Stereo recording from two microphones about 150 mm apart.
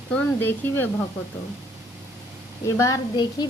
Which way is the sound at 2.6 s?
20° left (ahead or behind).